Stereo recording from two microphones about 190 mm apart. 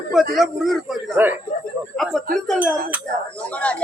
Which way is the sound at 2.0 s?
Centre (ahead or behind).